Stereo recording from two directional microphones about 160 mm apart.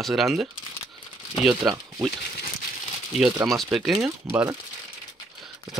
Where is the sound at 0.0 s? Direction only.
Centre (ahead or behind).